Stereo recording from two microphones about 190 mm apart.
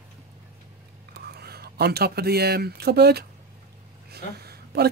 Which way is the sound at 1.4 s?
55° right (ahead or behind).